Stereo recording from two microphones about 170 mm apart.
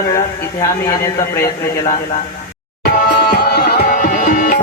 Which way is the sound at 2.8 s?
65° left (ahead or behind).